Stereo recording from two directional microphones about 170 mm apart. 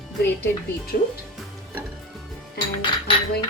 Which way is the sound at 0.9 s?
55° left (ahead or behind).